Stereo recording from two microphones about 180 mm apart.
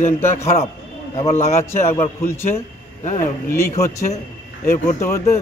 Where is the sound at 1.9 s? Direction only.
15° left (ahead or behind).